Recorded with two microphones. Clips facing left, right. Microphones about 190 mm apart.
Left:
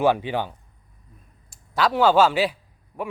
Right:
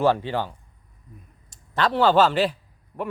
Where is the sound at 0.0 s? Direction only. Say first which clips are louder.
Even; 15° left (ahead or behind).